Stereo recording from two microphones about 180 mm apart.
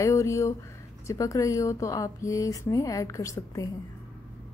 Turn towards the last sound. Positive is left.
turn(degrees=15)  # may be behind; listen again after turning